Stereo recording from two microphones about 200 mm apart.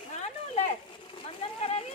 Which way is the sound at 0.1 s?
35° left (ahead or behind).